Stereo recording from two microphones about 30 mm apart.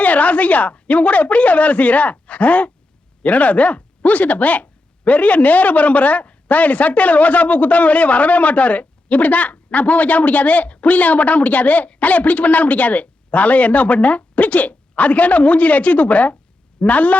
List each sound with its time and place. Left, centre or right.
0.0 s speech: left